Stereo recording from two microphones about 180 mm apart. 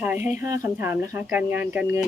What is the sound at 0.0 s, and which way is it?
Speech, 10° right (ahead or behind).